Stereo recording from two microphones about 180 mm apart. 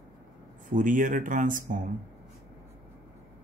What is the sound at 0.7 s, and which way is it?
Speech, 45° right (ahead or behind).